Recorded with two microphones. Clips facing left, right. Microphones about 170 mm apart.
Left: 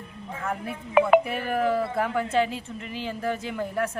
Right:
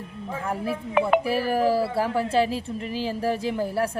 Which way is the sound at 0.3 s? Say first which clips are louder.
Right 4 dB; 35° right (ahead or behind).